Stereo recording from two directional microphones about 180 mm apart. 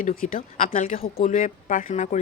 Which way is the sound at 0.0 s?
50° left (ahead or behind).